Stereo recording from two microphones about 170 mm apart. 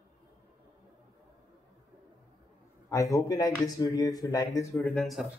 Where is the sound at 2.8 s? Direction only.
20° left (ahead or behind).